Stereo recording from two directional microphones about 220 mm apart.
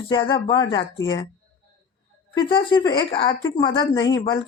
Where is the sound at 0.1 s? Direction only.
25° left (ahead or behind).